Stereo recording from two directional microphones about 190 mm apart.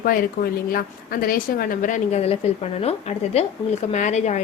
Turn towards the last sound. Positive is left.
turn(degrees=40)  # may be behind; listen again after turning